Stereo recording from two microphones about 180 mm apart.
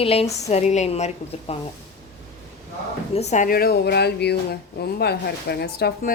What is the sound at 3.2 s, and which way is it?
Speech, 40° left (ahead or behind).